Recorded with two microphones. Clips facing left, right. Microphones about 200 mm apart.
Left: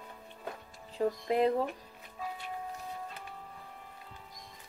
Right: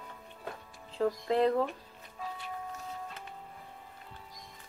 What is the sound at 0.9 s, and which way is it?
Speech, 15° left (ahead or behind).